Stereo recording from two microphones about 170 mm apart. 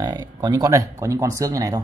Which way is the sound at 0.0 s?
25° right (ahead or behind).